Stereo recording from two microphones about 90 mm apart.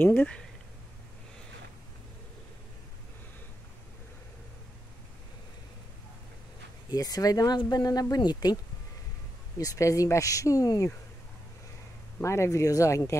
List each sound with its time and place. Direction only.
0.0 s speech: 25° left (ahead or behind)
6.9 s speech: 45° left (ahead or behind)
9.6 s speech: 40° left (ahead or behind)
12.2 s speech: 30° left (ahead or behind)